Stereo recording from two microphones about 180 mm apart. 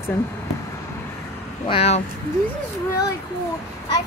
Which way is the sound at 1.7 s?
35° left (ahead or behind).